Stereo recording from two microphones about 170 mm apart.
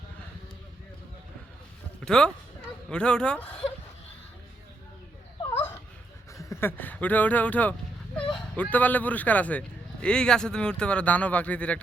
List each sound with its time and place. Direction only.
2.0 s speech: 5° left (ahead or behind)
6.3 s speech: 15° left (ahead or behind)